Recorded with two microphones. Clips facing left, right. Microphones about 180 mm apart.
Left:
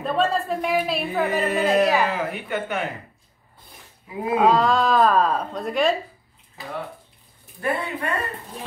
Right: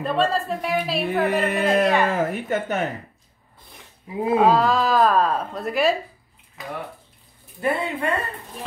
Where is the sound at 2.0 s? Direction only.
45° right (ahead or behind).